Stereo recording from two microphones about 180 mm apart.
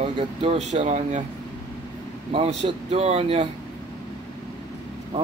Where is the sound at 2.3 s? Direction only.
30° right (ahead or behind).